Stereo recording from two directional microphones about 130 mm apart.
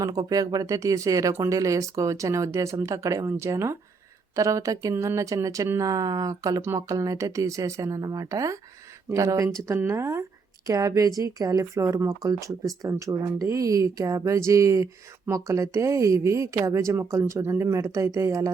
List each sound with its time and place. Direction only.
0.0 s speech: 30° right (ahead or behind)